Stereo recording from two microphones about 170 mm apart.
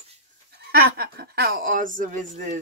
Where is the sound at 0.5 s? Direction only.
65° right (ahead or behind); by 2.6 s 45° right (ahead or behind).